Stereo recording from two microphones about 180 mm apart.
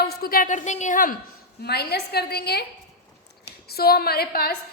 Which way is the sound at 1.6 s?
65° left (ahead or behind).